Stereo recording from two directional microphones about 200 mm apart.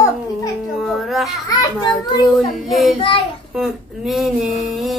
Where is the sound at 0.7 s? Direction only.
Centre (ahead or behind).